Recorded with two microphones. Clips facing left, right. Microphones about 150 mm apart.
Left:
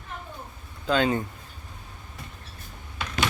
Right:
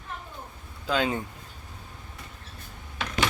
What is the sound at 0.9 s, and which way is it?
Speech, 5° right (ahead or behind).